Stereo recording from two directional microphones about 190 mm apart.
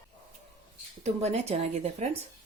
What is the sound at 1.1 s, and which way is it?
Speech, 35° right (ahead or behind).